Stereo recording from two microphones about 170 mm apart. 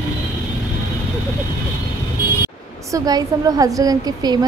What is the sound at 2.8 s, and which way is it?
A woman's voice, 20° right (ahead or behind).